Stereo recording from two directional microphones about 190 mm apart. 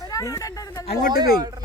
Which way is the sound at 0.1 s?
15° left (ahead or behind).